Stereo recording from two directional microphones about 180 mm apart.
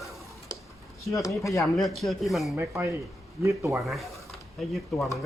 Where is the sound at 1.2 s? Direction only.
15° left (ahead or behind).